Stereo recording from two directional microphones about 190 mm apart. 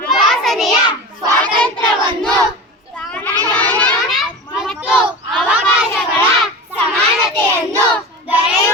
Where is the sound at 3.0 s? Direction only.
5° left (ahead or behind).